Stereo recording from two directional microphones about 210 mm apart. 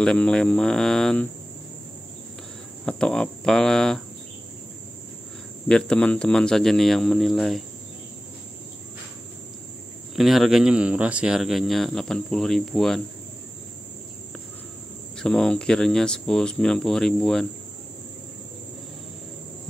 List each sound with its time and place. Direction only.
0.0 s speech: 5° left (ahead or behind)
2.8 s speech: 5° left (ahead or behind)
5.7 s speech: 5° left (ahead or behind)
10.1 s speech: centre (ahead or behind)
15.1 s speech: 5° left (ahead or behind)